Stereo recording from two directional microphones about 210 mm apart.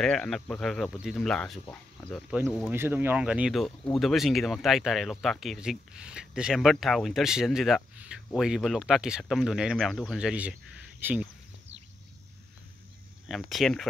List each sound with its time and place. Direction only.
0.0 s speech: 5° left (ahead or behind)
13.3 s speech: centre (ahead or behind)